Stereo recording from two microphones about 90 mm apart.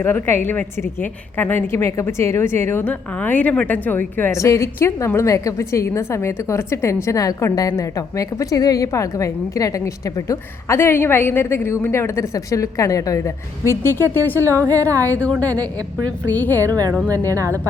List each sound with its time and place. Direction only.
0.0 s a woman's voice: 25° left (ahead or behind)
4.4 s a woman's voice: 35° left (ahead or behind)
14.6 s speech: 40° right (ahead or behind)
14.9 s a woman's voice: 20° left (ahead or behind)
16.3 s a woman's voice: 20° left (ahead or behind)
16.6 s speech: 40° right (ahead or behind)